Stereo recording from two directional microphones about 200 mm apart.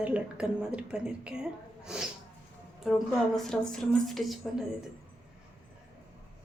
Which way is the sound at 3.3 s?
Centre (ahead or behind).